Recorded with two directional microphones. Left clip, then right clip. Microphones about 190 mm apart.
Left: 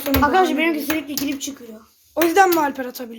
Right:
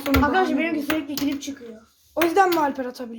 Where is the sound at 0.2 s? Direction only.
45° left (ahead or behind).